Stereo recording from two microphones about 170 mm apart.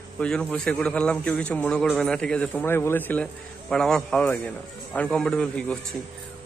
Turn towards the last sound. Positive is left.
turn(degrees=5)  # may be behind; listen again after turning